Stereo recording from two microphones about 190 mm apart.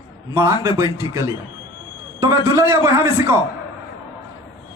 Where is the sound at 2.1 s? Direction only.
15° right (ahead or behind).